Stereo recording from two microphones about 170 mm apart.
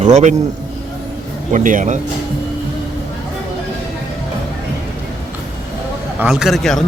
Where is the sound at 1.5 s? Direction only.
50° right (ahead or behind).